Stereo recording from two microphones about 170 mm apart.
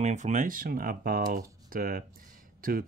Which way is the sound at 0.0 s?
45° right (ahead or behind).